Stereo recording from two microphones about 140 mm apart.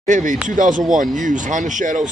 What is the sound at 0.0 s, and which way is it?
A man's voice, 65° right (ahead or behind).